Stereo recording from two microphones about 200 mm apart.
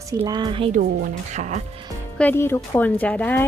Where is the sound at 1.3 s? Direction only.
35° right (ahead or behind).